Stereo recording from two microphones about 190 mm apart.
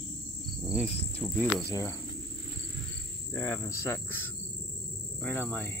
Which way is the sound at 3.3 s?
15° left (ahead or behind).